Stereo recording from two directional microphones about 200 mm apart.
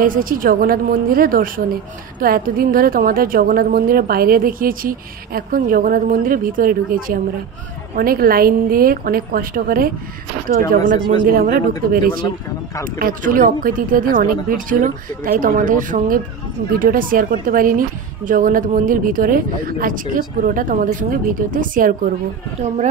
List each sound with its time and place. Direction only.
0.0 s a woman's voice: 45° right (ahead or behind)
11.2 s a woman's voice: 45° right (ahead or behind)